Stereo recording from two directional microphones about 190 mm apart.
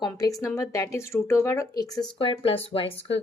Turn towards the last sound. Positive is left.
turn(degrees=30)  # may be behind; listen again after turning